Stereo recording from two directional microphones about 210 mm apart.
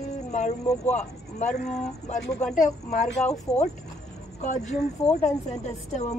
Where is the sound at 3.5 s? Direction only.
30° left (ahead or behind).